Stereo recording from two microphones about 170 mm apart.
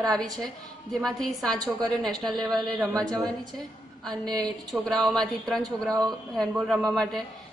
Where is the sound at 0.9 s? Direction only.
Centre (ahead or behind).